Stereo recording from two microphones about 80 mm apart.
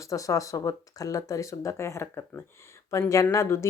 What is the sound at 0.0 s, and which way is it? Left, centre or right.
A woman's voice, left.